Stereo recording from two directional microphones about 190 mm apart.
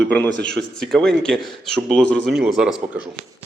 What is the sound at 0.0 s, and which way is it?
Speech, 10° left (ahead or behind).